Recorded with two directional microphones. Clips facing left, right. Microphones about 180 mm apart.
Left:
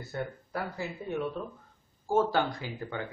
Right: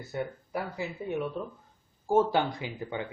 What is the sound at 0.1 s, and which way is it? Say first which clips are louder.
A man's voice: right 2 dB; 15° right (ahead or behind).